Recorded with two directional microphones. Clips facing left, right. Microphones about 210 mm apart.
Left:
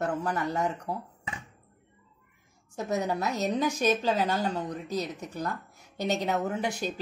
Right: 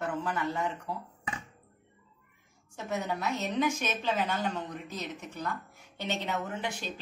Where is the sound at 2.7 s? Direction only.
40° left (ahead or behind).